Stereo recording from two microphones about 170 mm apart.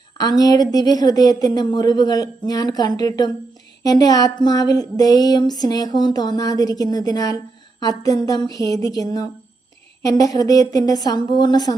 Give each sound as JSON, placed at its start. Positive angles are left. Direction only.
{"t": 0.2, "sound": "speech", "side_deg": 20}